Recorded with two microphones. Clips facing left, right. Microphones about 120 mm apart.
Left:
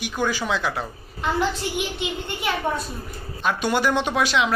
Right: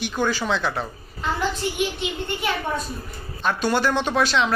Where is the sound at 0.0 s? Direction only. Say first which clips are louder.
Right 1 dB; 10° left (ahead or behind).